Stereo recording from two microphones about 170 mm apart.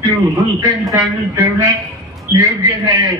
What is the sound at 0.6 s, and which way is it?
A man's voice, 20° right (ahead or behind).